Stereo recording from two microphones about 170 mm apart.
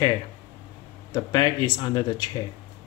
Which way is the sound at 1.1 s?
25° left (ahead or behind).